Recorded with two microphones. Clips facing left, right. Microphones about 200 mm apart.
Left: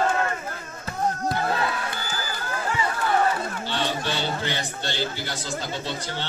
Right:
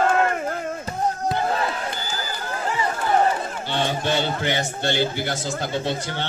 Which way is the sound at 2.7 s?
35° right (ahead or behind).